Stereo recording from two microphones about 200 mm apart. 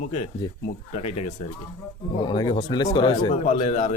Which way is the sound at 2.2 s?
25° left (ahead or behind).